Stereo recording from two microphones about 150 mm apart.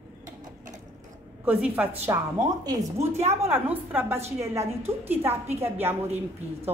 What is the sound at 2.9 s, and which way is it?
Speech, 45° right (ahead or behind).